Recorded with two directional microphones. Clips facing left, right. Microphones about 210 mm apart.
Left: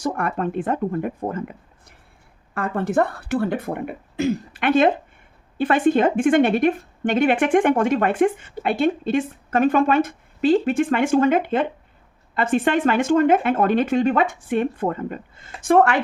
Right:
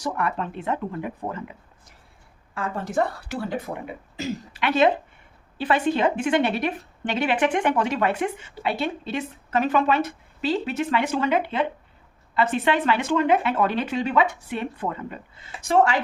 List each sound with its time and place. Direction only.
0.0 s a woman's voice: 50° left (ahead or behind)
2.6 s a woman's voice: 60° left (ahead or behind)